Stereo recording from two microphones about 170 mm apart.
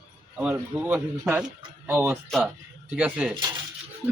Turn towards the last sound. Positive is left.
turn(degrees=-5)  # may be behind; listen again after turning